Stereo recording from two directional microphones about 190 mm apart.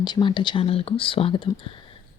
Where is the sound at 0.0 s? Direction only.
25° left (ahead or behind).